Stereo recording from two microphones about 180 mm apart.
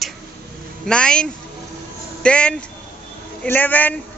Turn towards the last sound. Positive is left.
turn(degrees=10)  # may be behind; listen again after turning